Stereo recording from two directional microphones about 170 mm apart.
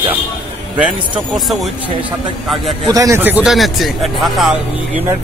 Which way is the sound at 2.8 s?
20° right (ahead or behind).